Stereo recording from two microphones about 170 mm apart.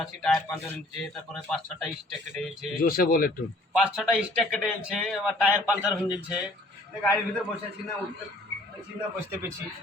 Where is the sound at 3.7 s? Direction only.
Centre (ahead or behind).